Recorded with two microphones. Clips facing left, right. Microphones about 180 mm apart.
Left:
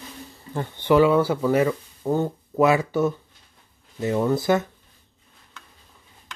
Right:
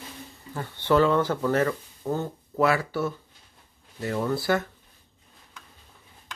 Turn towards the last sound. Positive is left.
turn(degrees=20)  # may be behind; listen again after turning